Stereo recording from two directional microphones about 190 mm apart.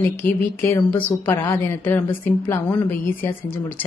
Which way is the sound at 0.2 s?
10° left (ahead or behind).